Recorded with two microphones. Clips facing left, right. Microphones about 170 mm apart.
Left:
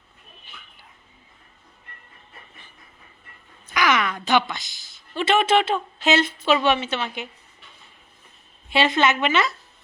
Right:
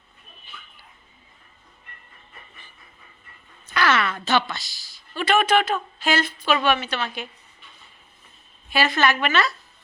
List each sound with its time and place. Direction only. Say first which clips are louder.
3.8 s a woman's voice: even; 15° left (ahead or behind)
8.7 s a woman's voice: left 1 dB; 25° left (ahead or behind)